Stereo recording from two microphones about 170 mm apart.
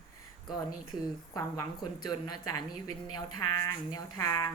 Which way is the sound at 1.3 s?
20° left (ahead or behind).